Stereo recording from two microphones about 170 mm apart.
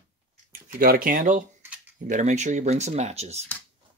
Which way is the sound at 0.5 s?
60° right (ahead or behind).